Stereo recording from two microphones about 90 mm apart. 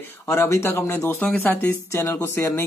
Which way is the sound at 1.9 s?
30° left (ahead or behind).